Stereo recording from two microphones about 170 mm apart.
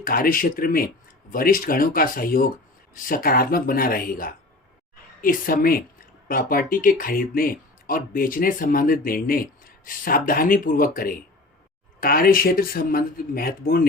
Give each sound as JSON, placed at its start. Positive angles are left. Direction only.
{"t": 0.0, "sound": "speech", "side_deg": 55}